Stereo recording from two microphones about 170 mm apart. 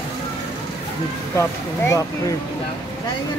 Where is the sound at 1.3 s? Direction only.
15° left (ahead or behind).